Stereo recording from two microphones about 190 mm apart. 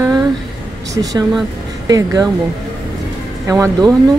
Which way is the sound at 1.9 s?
20° right (ahead or behind).